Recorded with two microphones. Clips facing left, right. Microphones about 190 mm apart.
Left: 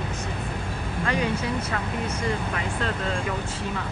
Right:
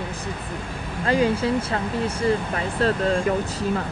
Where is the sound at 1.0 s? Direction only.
30° right (ahead or behind).